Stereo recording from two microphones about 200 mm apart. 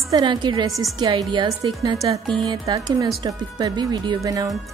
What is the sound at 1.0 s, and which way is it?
A woman's voice, 20° right (ahead or behind).